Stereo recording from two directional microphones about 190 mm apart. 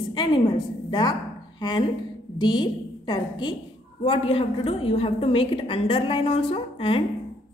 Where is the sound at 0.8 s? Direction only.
25° left (ahead or behind).